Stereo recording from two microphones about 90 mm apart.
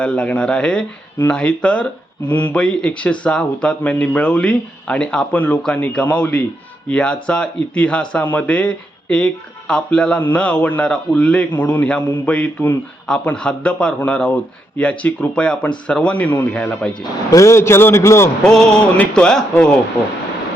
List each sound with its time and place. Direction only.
0.0 s speech: 10° left (ahead or behind)
17.3 s a man's voice: 35° left (ahead or behind)
18.4 s speech: 5° left (ahead or behind)